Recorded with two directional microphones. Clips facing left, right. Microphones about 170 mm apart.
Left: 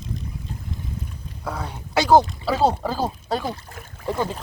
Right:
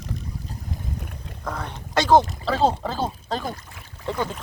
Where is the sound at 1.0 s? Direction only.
70° right (ahead or behind).